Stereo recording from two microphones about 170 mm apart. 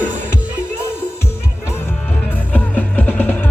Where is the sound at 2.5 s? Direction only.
10° left (ahead or behind).